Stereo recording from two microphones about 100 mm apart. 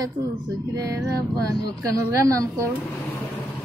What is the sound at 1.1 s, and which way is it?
Female singing, 35° right (ahead or behind).